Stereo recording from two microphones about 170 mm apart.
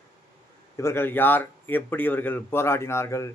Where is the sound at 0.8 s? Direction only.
15° left (ahead or behind).